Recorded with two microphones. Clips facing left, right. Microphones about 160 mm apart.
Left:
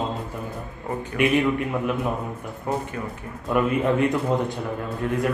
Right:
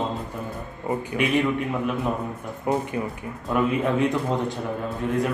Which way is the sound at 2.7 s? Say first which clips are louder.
Right 3 dB; 10° right (ahead or behind).